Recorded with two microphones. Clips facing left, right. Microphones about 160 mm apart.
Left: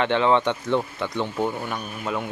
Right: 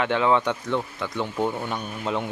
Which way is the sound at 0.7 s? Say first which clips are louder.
Left 3 dB; 25° left (ahead or behind).